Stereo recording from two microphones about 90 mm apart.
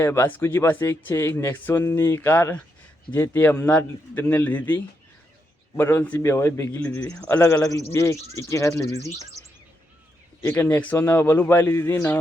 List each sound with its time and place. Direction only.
0.0 s speech: 30° left (ahead or behind)
3.5 s speech: 35° left (ahead or behind)
3.8 s speech: 20° left (ahead or behind)
7.6 s speech: 40° left (ahead or behind)
10.4 s speech: 25° left (ahead or behind)
10.9 s speech: 30° left (ahead or behind)